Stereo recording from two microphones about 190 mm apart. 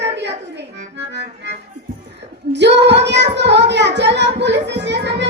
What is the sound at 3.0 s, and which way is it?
Music, 65° right (ahead or behind).